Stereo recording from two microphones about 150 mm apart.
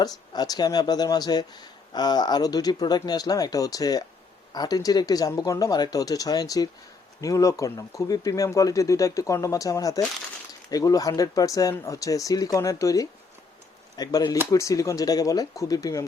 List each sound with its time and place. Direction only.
0.0 s speech: 25° left (ahead or behind)